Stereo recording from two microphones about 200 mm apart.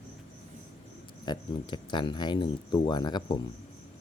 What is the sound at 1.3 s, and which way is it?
Speech, 20° left (ahead or behind).